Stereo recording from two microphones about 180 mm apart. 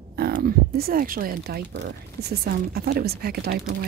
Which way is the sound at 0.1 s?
55° right (ahead or behind).